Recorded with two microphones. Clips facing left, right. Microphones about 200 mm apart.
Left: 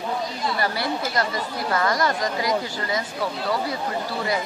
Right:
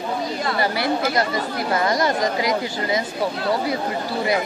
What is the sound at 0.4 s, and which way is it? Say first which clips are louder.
Speech: right 4 dB; 75° right (ahead or behind).